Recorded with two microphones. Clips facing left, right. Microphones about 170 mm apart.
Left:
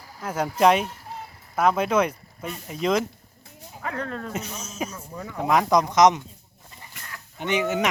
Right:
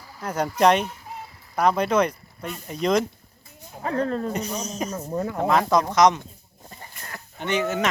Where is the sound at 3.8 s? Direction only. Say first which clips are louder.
Right 6 dB; 30° right (ahead or behind).